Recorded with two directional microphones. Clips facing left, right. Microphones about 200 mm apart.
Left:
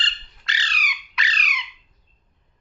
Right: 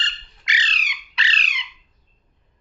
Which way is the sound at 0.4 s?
15° right (ahead or behind).